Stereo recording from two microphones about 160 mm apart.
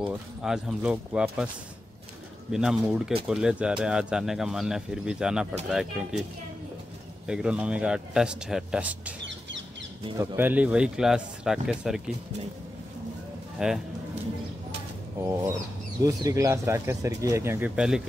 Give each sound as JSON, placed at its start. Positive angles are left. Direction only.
{"t": 0.0, "sound": "speech", "side_deg": -5}
{"t": 2.5, "sound": "speech", "side_deg": -5}
{"t": 7.2, "sound": "speech", "side_deg": -5}
{"t": 10.1, "sound": "speech", "side_deg": -15}
{"t": 13.6, "sound": "speech", "side_deg": -5}
{"t": 15.1, "sound": "speech", "side_deg": -15}